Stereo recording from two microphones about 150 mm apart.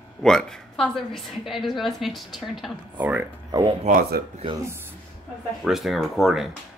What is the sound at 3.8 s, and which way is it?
Speech, 75° right (ahead or behind).